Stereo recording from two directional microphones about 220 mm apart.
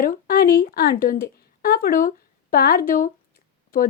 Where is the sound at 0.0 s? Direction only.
40° left (ahead or behind).